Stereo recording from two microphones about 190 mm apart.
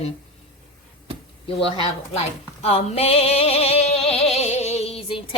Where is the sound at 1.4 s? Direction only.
30° left (ahead or behind).